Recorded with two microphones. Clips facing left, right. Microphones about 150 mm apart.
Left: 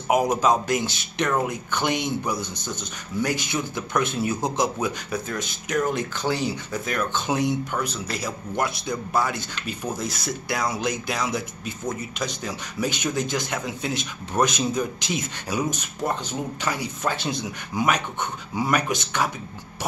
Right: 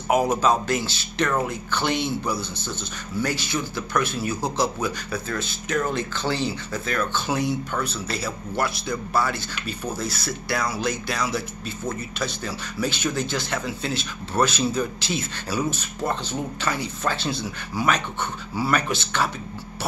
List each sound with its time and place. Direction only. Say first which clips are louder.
0.1 s speech: even; 15° left (ahead or behind)